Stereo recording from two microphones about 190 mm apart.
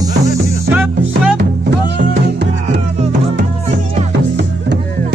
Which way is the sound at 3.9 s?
35° right (ahead or behind).